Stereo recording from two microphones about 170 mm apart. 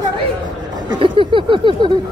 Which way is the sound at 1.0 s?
30° right (ahead or behind).